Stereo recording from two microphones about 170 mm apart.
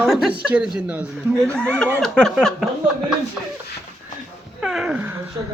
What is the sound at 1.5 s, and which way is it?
Speech, 5° left (ahead or behind).